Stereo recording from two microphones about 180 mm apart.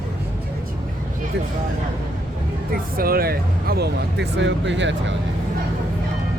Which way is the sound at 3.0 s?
55° right (ahead or behind).